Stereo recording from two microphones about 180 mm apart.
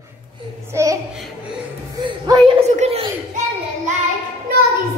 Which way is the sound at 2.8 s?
35° right (ahead or behind).